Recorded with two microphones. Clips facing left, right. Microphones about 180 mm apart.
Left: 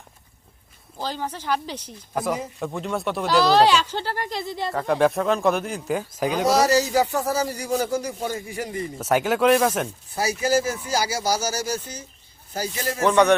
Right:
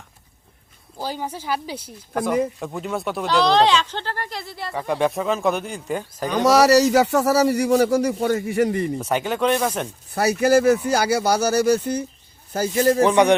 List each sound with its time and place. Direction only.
0.9 s speech: 10° right (ahead or behind); by 4.7 s 20° left (ahead or behind)
4.7 s speech: centre (ahead or behind)
6.4 s a man's voice: 70° right (ahead or behind)
9.0 s speech: 5° left (ahead or behind)
10.1 s speech: 60° right (ahead or behind)
12.5 s speech: 45° right (ahead or behind)
13.0 s speech: 15° right (ahead or behind)